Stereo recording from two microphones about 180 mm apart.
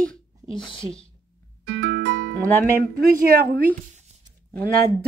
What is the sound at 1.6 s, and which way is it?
Music, 70° right (ahead or behind).